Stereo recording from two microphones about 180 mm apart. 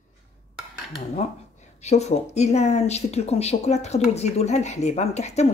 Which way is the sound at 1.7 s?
40° left (ahead or behind).